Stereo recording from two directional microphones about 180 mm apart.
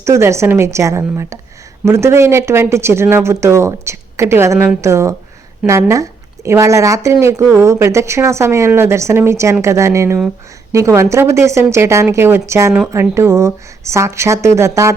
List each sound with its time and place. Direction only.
0.0 s speech: 15° right (ahead or behind)